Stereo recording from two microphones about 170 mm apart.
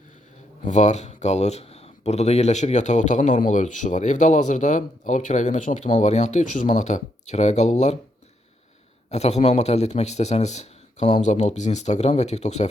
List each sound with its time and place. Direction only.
0.6 s speech: 45° left (ahead or behind)
9.0 s a man's voice: 40° left (ahead or behind)